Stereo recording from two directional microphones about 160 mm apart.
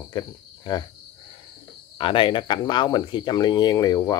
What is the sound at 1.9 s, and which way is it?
Speech, 30° left (ahead or behind).